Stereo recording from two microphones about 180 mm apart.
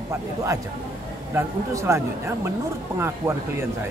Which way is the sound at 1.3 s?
15° right (ahead or behind).